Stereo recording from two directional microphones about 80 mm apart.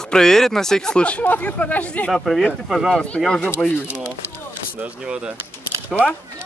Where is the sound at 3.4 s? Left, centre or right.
Left.